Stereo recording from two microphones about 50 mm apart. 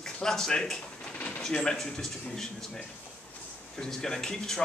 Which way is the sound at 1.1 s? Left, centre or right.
Left.